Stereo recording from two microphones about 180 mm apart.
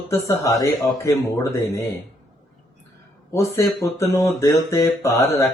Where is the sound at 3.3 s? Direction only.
15° left (ahead or behind).